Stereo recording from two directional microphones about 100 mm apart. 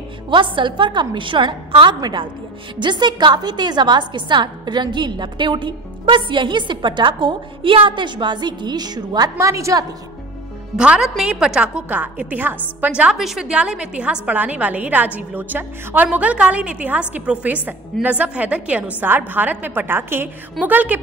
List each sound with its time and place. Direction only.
0.3 s a woman's voice: 55° right (ahead or behind)
2.0 s a woman's voice: 45° right (ahead or behind)
9.5 s a woman's voice: 30° right (ahead or behind)
10.8 s a woman's voice: 5° right (ahead or behind)